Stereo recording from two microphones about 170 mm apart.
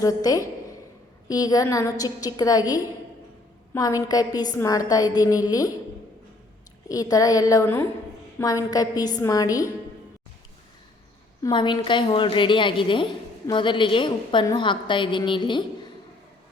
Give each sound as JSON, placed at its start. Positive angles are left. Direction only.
{"t": 0.0, "sound": "a woman's voice", "side_deg": 20}
{"t": 6.8, "sound": "a woman's voice", "side_deg": 20}
{"t": 11.4, "sound": "a woman's voice", "side_deg": 30}